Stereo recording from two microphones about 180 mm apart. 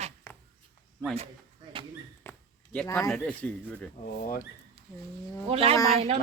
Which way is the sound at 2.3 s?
10° left (ahead or behind).